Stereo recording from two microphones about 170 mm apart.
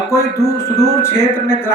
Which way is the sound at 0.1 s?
15° left (ahead or behind).